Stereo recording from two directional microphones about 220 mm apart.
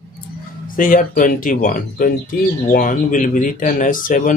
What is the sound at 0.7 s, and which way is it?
Speech, 40° left (ahead or behind).